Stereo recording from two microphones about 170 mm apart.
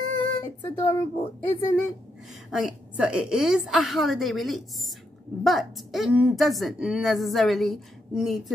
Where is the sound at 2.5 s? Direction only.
5° right (ahead or behind).